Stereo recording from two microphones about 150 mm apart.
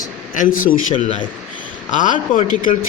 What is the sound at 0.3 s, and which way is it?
A man's voice, 65° left (ahead or behind).